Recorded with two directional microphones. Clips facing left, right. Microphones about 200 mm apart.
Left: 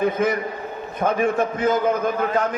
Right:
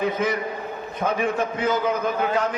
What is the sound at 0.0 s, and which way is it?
A man's voice, 50° left (ahead or behind).